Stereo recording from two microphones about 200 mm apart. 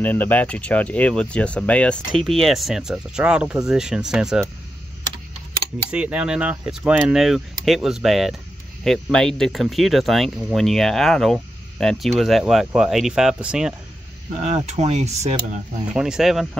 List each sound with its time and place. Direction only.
0.0 s speech: 10° left (ahead or behind)
5.9 s speech: 5° right (ahead or behind)
14.4 s speech: 35° right (ahead or behind)
15.9 s speech: 5° right (ahead or behind)